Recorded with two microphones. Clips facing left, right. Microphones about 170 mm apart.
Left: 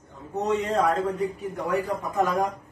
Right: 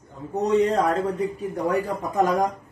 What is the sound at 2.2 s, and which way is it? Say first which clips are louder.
Speech: right 3 dB; 40° right (ahead or behind).